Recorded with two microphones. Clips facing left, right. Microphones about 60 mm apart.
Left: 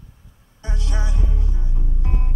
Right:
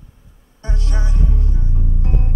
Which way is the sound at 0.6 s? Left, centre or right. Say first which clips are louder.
Right 2 dB; right.